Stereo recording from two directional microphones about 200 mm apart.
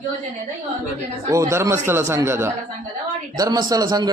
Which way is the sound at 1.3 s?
15° right (ahead or behind).